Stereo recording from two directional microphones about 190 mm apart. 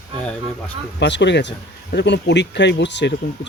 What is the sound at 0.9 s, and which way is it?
Speech, 65° left (ahead or behind).